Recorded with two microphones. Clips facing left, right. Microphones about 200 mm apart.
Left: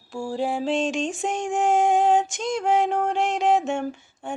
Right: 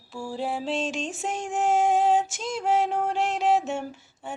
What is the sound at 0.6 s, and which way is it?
Female singing, centre (ahead or behind).